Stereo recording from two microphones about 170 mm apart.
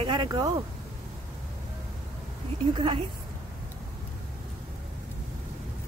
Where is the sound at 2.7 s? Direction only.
30° right (ahead or behind).